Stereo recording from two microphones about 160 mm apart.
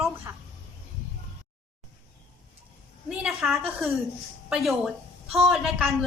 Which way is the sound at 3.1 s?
Centre (ahead or behind).